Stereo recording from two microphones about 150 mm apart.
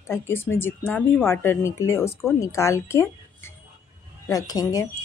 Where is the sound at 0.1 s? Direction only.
15° left (ahead or behind).